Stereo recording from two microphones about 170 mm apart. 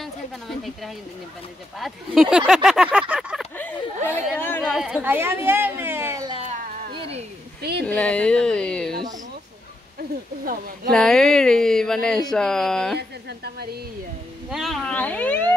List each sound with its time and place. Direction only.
0.0 s a sound: centre (ahead or behind)
1.8 s speech: centre (ahead or behind)
3.5 s speech: 10° left (ahead or behind)
4.4 s a sound: 10° left (ahead or behind)
4.7 s a woman's voice: 5° right (ahead or behind)
7.0 s a sound: 35° right (ahead or behind)
7.8 s speech: 5° left (ahead or behind)
10.4 s speech: 55° right (ahead or behind)
10.9 s speech: 5° left (ahead or behind)
14.5 s speech: centre (ahead or behind)